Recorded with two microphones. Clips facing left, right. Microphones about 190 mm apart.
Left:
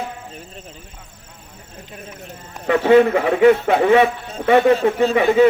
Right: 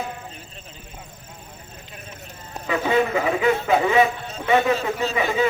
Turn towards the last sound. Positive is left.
turn(degrees=60)  # may be behind; listen again after turning